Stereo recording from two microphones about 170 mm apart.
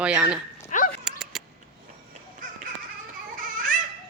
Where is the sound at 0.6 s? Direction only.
50° left (ahead or behind).